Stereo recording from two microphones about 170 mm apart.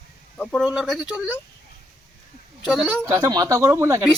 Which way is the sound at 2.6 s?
5° right (ahead or behind).